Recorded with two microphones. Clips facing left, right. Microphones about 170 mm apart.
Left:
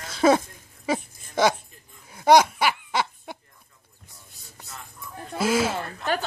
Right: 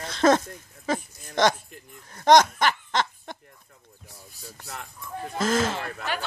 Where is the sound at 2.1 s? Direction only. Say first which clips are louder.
Even; 10° left (ahead or behind).